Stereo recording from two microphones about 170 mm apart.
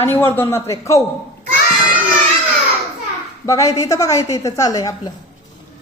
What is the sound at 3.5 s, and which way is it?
A woman's voice, 20° left (ahead or behind).